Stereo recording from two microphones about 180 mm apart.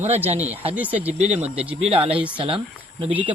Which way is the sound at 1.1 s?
40° right (ahead or behind).